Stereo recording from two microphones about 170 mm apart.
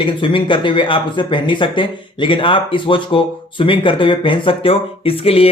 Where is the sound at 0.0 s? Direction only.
30° left (ahead or behind).